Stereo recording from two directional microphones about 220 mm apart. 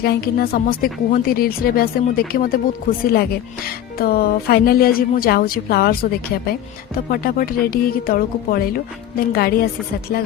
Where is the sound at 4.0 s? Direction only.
45° left (ahead or behind).